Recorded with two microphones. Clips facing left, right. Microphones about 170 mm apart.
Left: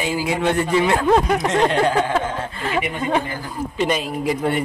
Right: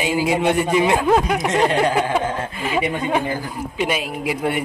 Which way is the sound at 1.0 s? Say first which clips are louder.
Left 1 dB; 5° right (ahead or behind).